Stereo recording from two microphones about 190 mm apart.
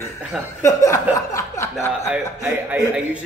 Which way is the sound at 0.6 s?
15° left (ahead or behind).